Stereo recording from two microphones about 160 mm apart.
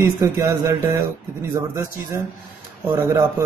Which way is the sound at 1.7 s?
20° right (ahead or behind).